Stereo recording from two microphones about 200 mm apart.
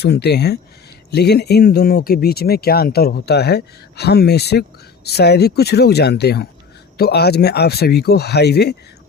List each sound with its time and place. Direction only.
0.0 s speech: 55° left (ahead or behind)